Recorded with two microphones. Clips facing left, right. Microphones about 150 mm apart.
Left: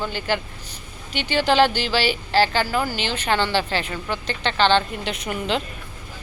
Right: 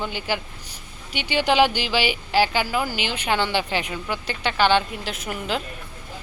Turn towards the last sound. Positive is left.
turn(degrees=-5)  # may be behind; listen again after turning